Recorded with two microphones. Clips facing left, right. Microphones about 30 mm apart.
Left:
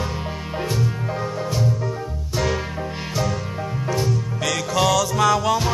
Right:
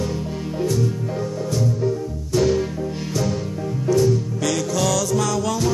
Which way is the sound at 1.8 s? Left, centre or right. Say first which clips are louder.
Right 4 dB; centre.